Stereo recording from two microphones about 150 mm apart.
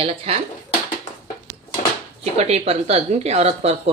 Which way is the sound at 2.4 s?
45° right (ahead or behind).